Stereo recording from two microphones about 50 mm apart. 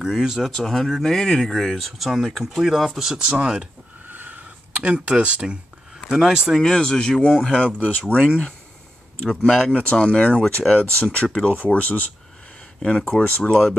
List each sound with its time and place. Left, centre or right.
0.0 s speech: centre
0.6 s speech: centre
4.1 s a sound: right
6.0 s speech: centre
6.5 s speech: centre
7.8 s speech: left
8.2 s speech: centre
9.8 s speech: left
12.8 s speech: left